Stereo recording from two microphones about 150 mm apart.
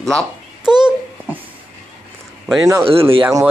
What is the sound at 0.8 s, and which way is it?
Babbling, 10° right (ahead or behind).